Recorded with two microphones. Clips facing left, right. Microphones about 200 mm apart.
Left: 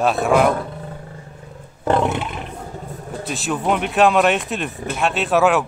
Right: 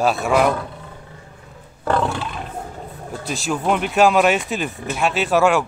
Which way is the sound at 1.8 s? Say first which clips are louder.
Left 2 dB; 20° left (ahead or behind).